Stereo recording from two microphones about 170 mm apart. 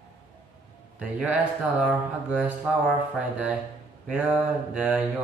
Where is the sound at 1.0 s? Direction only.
5° right (ahead or behind).